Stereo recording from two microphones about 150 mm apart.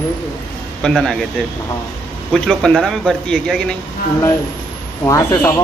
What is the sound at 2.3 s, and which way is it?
A man's voice, 5° left (ahead or behind).